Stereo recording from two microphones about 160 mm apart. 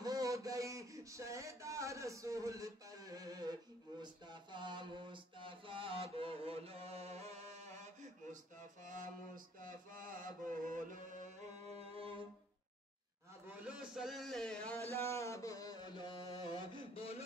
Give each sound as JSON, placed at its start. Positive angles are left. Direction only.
{"t": 0.0, "sound": "speech", "side_deg": -20}
{"t": 4.0, "sound": "mantra", "side_deg": -30}
{"t": 13.6, "sound": "speech", "side_deg": -5}
{"t": 14.9, "sound": "music", "side_deg": 15}